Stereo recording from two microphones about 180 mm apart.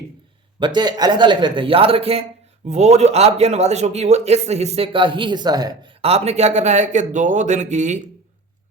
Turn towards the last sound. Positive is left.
turn(degrees=-40)  # may be behind; listen again after turning